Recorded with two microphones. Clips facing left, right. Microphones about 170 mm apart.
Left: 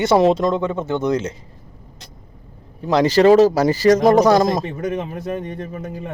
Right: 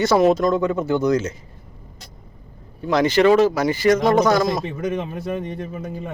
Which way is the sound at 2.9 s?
35° left (ahead or behind).